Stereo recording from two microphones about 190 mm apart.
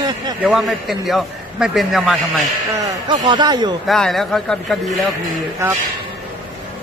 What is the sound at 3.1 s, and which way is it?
Speech, 25° right (ahead or behind).